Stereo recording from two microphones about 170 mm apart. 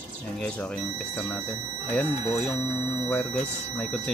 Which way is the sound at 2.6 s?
40° left (ahead or behind).